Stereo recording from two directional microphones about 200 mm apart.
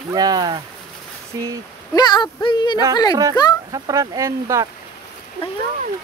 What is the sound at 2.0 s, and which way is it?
Speech, 20° left (ahead or behind).